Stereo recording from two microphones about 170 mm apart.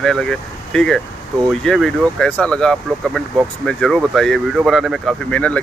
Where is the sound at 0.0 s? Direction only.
5° left (ahead or behind).